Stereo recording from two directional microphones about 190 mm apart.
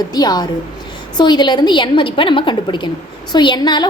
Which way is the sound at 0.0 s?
20° left (ahead or behind).